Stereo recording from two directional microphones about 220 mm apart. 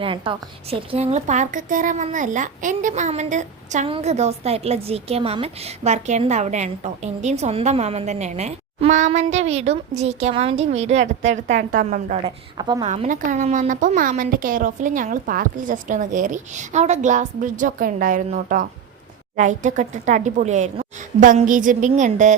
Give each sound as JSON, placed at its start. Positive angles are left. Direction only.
{"t": 0.0, "sound": "a woman's voice", "side_deg": -25}
{"t": 12.5, "sound": "a woman's voice", "side_deg": -20}
{"t": 12.8, "sound": "a woman's voice", "side_deg": -30}